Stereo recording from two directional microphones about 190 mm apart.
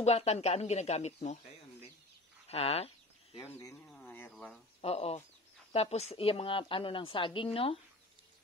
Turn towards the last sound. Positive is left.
turn(degrees=30)  # may be behind; listen again after turning